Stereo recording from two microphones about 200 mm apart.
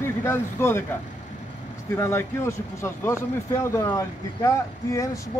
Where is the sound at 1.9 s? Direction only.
15° left (ahead or behind).